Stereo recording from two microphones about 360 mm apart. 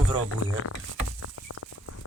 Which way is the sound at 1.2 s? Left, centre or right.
Left.